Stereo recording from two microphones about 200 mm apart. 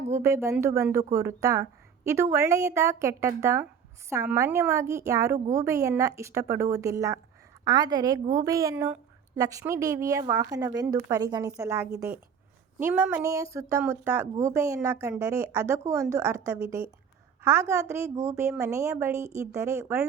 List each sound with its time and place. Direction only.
0.1 s a woman's voice: 15° right (ahead or behind)